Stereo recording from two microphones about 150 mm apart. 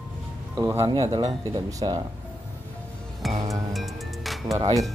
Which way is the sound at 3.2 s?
Centre (ahead or behind).